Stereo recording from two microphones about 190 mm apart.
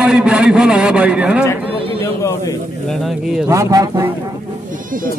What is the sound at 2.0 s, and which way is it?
Speech, 15° left (ahead or behind).